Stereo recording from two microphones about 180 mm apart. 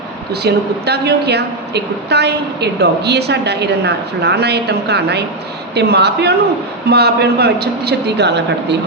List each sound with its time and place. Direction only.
0.4 s a woman's voice: 65° right (ahead or behind)